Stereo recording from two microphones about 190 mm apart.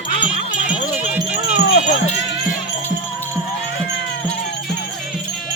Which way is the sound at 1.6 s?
70° left (ahead or behind).